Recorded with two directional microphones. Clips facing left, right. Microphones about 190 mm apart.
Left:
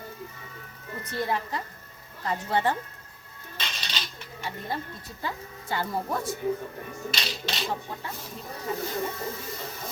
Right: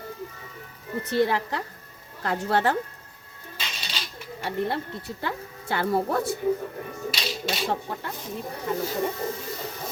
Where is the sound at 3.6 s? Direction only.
5° right (ahead or behind).